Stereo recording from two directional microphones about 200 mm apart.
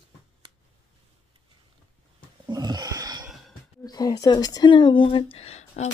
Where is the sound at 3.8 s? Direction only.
20° left (ahead or behind).